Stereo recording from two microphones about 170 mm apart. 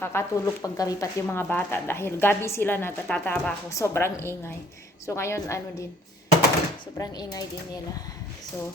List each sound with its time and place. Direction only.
0.0 s speech: 15° left (ahead or behind)
6.9 s speech: 20° left (ahead or behind)